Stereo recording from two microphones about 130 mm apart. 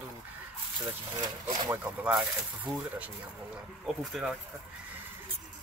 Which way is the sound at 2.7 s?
10° right (ahead or behind).